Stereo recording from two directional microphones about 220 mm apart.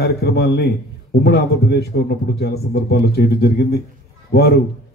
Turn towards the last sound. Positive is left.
turn(degrees=45)  # may be behind; listen again after turning